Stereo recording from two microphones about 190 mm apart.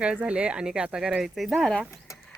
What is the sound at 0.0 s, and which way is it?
Speech, 5° right (ahead or behind).